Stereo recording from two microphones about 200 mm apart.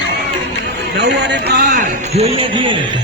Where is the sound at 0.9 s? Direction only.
55° right (ahead or behind).